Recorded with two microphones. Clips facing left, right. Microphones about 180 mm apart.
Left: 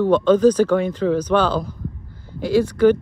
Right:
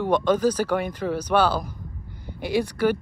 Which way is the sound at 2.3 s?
15° right (ahead or behind).